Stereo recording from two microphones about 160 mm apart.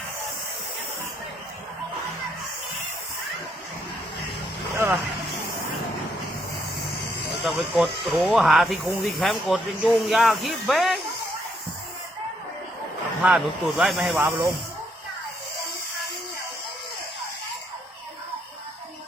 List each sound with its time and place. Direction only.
7.4 s speech: centre (ahead or behind)
13.2 s speech: 5° right (ahead or behind)
14.2 s speech: 15° right (ahead or behind)